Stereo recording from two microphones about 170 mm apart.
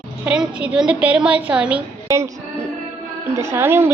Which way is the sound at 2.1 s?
20° right (ahead or behind).